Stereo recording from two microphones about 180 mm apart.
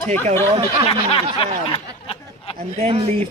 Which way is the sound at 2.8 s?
35° right (ahead or behind).